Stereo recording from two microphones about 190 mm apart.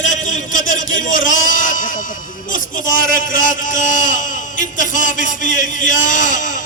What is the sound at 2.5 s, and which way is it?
A man's voice, 45° left (ahead or behind).